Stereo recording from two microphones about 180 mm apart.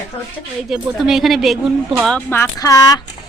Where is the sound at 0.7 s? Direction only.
5° right (ahead or behind).